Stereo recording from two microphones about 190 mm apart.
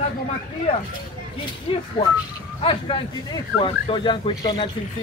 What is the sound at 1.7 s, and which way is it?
Speech, 25° left (ahead or behind).